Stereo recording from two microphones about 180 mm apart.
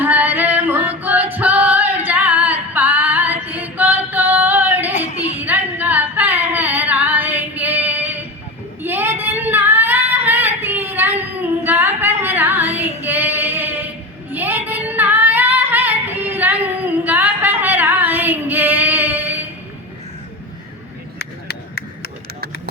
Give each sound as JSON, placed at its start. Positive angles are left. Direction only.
{"t": 0.0, "sound": "female singing", "side_deg": -10}
{"t": 4.9, "sound": "a sound", "side_deg": 40}
{"t": 5.4, "sound": "singing", "side_deg": -10}
{"t": 8.8, "sound": "female singing", "side_deg": -10}
{"t": 11.2, "sound": "singing", "side_deg": -10}
{"t": 11.9, "sound": "female singing", "side_deg": -10}
{"t": 21.2, "sound": "a sound", "side_deg": 60}